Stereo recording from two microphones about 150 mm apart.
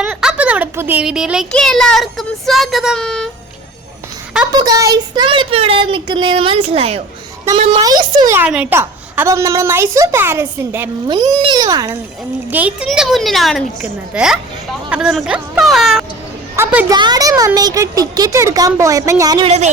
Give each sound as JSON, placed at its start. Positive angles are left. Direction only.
{"t": 0.0, "sound": "a child's voice", "side_deg": -5}
{"t": 4.5, "sound": "speech", "side_deg": -25}
{"t": 7.8, "sound": "a child's voice", "side_deg": -25}
{"t": 8.4, "sound": "a woman's voice", "side_deg": -10}
{"t": 11.1, "sound": "a child's voice", "side_deg": -30}
{"t": 12.5, "sound": "speech", "side_deg": -10}
{"t": 16.6, "sound": "a woman's voice", "side_deg": -20}
{"t": 19.5, "sound": "speech", "side_deg": -45}